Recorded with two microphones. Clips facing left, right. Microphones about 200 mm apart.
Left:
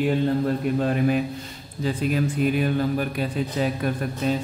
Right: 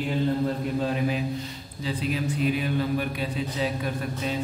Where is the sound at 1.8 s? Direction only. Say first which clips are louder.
Left 5 dB; 50° left (ahead or behind).